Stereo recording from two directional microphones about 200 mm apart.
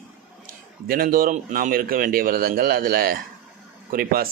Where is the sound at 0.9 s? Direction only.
45° right (ahead or behind).